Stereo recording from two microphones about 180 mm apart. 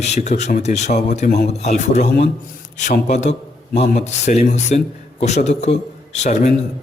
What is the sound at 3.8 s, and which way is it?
A man's voice, 40° left (ahead or behind).